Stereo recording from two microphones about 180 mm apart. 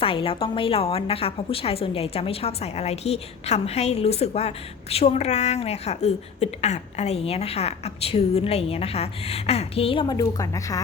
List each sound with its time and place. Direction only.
0.0 s a woman's voice: 30° left (ahead or behind)